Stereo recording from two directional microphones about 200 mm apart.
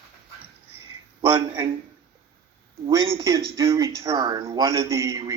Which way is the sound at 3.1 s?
20° right (ahead or behind).